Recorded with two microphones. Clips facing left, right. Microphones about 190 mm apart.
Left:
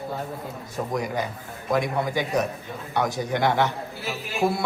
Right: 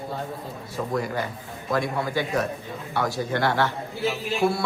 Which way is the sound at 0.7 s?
15° left (ahead or behind).